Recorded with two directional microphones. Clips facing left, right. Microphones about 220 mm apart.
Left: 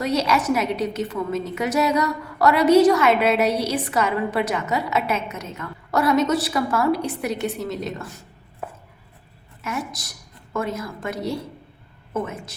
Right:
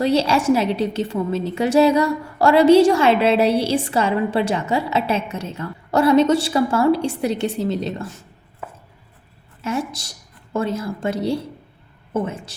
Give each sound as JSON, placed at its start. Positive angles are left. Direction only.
{"t": 0.0, "sound": "a woman's voice", "side_deg": -30}
{"t": 9.6, "sound": "a woman's voice", "side_deg": -30}